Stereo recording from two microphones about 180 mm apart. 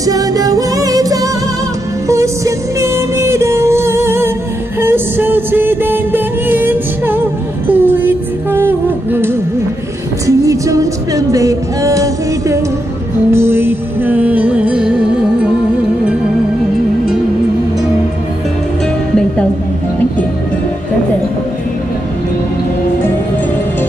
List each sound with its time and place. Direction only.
0.0 s music: 20° right (ahead or behind)